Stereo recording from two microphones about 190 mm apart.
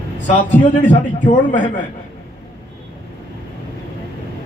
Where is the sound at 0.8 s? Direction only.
40° left (ahead or behind).